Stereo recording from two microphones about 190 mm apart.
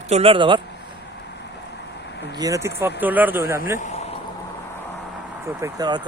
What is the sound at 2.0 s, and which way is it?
Vehicle, 65° left (ahead or behind).